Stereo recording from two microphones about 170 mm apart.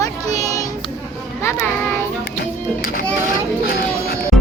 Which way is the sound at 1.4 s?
15° left (ahead or behind).